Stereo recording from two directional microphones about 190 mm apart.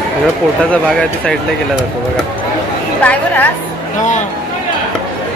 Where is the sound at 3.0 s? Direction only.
10° left (ahead or behind).